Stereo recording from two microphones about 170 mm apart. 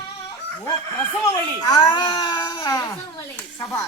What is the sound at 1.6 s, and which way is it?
Speech, 25° left (ahead or behind).